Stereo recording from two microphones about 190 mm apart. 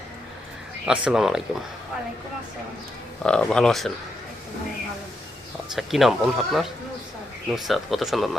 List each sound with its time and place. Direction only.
0.9 s speech: 5° right (ahead or behind)
3.2 s speech: 5° left (ahead or behind)
5.7 s speech: centre (ahead or behind)